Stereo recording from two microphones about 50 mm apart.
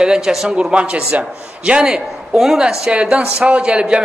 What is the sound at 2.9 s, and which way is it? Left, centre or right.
A man's voice, right.